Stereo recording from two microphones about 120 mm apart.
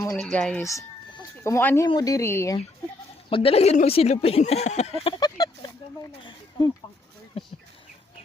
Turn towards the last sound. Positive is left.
turn(degrees=50)  # may be behind; listen again after turning